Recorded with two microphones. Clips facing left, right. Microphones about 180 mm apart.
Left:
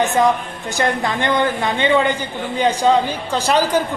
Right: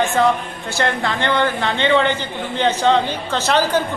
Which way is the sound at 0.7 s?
15° left (ahead or behind).